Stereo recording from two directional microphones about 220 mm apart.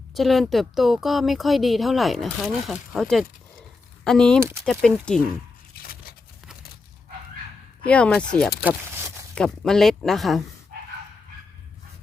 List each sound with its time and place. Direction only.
0.1 s a woman's voice: centre (ahead or behind)
5.8 s a sound: 45° left (ahead or behind)
7.9 s a woman's voice: 5° left (ahead or behind)